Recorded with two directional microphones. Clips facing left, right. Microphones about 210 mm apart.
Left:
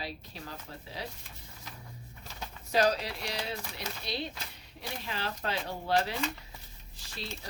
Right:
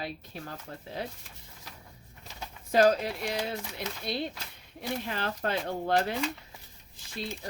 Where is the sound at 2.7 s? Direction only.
50° right (ahead or behind).